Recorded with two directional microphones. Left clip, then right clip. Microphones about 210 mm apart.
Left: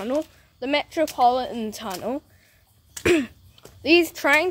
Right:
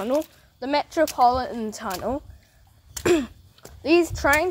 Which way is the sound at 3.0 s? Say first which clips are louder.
Left 1 dB; 15° left (ahead or behind).